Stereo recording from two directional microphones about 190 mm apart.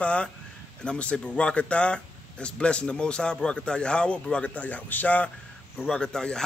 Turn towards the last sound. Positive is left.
turn(degrees=5)  # may be behind; listen again after turning